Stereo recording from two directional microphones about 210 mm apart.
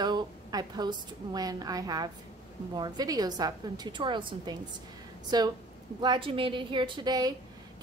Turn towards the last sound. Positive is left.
turn(degrees=-20)  # may be behind; listen again after turning